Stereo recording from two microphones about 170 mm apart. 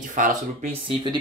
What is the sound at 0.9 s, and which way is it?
Speech, 30° right (ahead or behind).